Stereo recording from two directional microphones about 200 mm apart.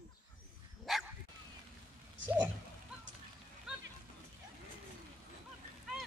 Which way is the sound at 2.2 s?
65° right (ahead or behind).